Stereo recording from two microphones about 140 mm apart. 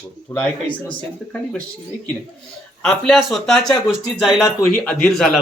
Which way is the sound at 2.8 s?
Centre (ahead or behind).